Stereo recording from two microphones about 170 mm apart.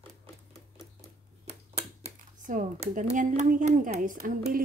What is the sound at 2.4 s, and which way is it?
A woman's voice, 50° right (ahead or behind).